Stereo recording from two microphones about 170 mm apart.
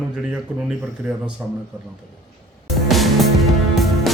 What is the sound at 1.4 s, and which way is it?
Speech, 10° right (ahead or behind).